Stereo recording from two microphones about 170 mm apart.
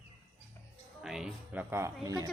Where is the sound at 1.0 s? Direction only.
5° right (ahead or behind).